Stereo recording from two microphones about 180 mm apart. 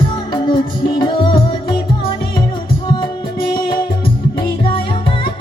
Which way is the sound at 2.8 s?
25° left (ahead or behind).